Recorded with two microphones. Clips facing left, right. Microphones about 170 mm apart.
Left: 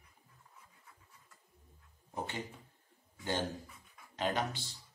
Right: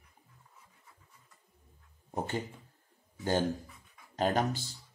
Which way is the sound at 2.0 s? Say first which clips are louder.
Right 6 dB; 45° right (ahead or behind).